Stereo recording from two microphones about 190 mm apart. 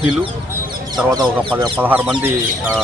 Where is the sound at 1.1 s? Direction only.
20° right (ahead or behind).